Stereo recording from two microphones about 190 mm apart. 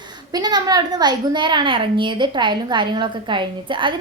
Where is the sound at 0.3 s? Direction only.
20° right (ahead or behind).